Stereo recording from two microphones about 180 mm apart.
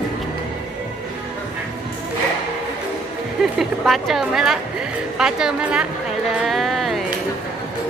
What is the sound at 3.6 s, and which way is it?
A woman's voice, centre (ahead or behind).